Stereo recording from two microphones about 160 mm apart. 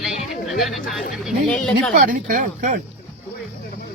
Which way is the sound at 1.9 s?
60° right (ahead or behind).